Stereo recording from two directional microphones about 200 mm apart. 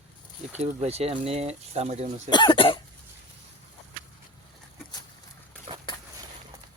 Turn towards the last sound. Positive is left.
turn(degrees=-30)  # may be behind; listen again after turning